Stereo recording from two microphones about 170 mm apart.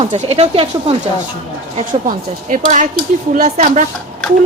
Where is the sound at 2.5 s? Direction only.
45° right (ahead or behind).